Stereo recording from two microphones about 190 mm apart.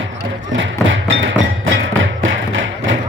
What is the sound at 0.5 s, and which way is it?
Music, 80° right.